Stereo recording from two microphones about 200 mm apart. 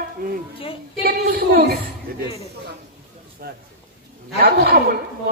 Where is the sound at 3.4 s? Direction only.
50° right (ahead or behind).